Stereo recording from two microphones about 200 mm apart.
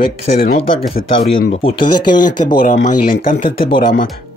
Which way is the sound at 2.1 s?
40° left (ahead or behind).